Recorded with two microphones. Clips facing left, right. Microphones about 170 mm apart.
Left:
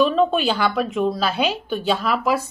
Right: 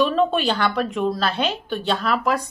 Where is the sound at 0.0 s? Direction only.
Centre (ahead or behind).